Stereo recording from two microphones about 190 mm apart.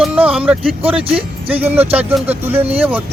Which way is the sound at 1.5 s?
10° right (ahead or behind).